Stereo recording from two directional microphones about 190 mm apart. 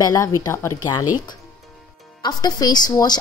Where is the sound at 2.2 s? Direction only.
20° left (ahead or behind).